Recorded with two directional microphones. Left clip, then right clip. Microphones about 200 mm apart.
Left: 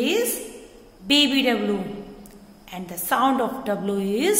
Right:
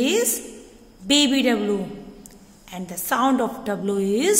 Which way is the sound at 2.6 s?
30° right (ahead or behind).